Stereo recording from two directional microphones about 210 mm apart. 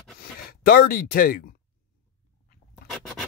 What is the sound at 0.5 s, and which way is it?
Speech, 45° left (ahead or behind).